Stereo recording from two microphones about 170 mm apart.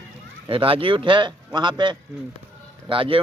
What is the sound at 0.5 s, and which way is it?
A man's voice, 30° right (ahead or behind).